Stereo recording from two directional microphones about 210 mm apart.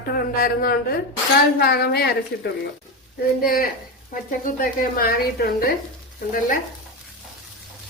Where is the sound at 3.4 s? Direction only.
45° left (ahead or behind).